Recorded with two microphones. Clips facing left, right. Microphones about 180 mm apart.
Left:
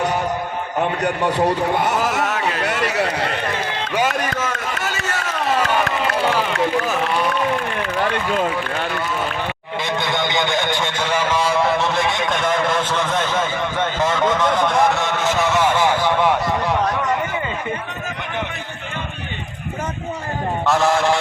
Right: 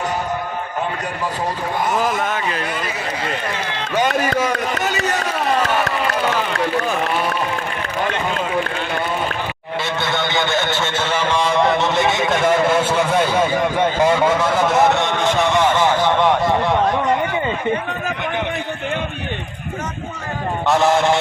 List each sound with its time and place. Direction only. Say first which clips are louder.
1.0 s a man's voice: left 5 dB; 70° left (ahead or behind)
4.2 s speech: right 4 dB; 10° right (ahead or behind)
10.0 s a man's voice: even; 15° left (ahead or behind); by 13.5 s 10° right (ahead or behind)
13.7 s a sound: right 3 dB; 10° right (ahead or behind); by 16.3 s 10° left (ahead or behind)
20.7 s mantra: right 2 dB; centre (ahead or behind)